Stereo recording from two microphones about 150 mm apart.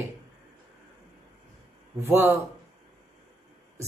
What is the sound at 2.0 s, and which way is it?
Speech, 15° right (ahead or behind).